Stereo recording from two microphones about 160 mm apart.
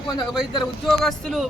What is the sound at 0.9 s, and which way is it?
Speech, 5° left (ahead or behind).